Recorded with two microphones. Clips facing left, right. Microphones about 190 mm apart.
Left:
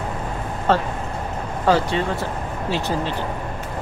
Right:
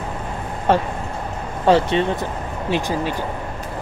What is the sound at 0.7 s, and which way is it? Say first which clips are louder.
Speech: right 2 dB; 15° right (ahead or behind).